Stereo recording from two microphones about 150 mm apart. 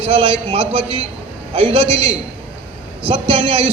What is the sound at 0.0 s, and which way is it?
A man's voice, 35° right (ahead or behind).